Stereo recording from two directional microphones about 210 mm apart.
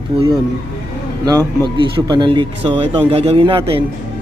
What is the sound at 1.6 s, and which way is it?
A man's voice, 20° right (ahead or behind).